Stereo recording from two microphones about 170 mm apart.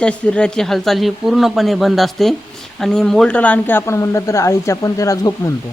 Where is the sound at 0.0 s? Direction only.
5° left (ahead or behind).